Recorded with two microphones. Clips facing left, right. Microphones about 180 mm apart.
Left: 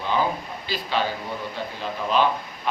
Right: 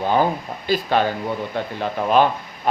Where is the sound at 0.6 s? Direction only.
50° right (ahead or behind).